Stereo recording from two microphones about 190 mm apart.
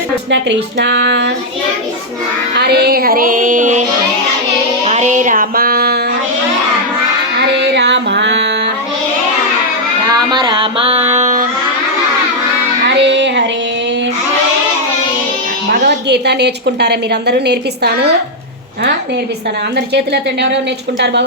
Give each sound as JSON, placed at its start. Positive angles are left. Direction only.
{"t": 0.3, "sound": "speech", "side_deg": -65}
{"t": 2.6, "sound": "music", "side_deg": -60}
{"t": 7.6, "sound": "music", "side_deg": -60}
{"t": 10.1, "sound": "music", "side_deg": -20}
{"t": 12.9, "sound": "music", "side_deg": -70}
{"t": 15.8, "sound": "a woman's voice", "side_deg": -65}
{"t": 21.0, "sound": "a woman's voice", "side_deg": -65}